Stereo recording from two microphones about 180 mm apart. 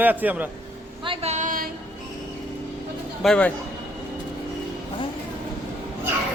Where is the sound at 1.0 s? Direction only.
30° right (ahead or behind); by 1.7 s 50° right (ahead or behind).